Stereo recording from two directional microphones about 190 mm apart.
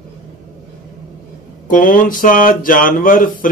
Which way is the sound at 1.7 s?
45° left (ahead or behind).